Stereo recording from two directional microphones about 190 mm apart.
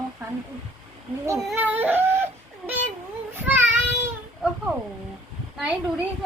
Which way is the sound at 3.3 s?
10° right (ahead or behind).